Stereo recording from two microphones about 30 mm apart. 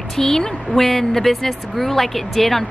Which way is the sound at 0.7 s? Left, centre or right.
Centre.